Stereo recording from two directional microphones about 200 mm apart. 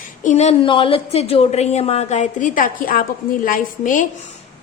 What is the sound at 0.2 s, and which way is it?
A woman's voice, 35° left (ahead or behind).